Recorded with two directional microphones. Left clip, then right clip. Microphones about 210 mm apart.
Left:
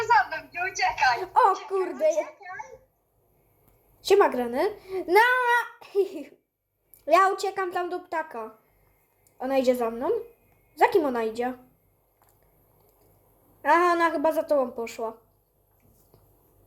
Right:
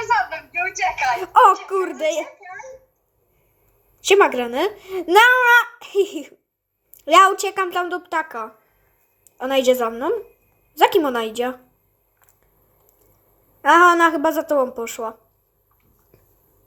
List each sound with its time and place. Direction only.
0.1 s a sound: 15° right (ahead or behind)
4.0 s speech: 15° right (ahead or behind)
14.1 s speech: 25° right (ahead or behind)